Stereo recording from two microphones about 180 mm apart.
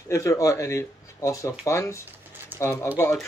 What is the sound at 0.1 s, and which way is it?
Speech, 15° left (ahead or behind).